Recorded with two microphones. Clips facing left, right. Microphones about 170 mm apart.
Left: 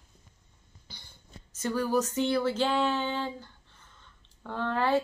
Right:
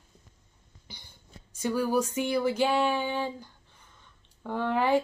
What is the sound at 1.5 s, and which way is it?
Speech, 10° right (ahead or behind).